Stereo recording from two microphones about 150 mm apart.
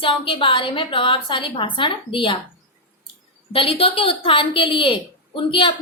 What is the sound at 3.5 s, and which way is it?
A woman's voice, 40° left (ahead or behind).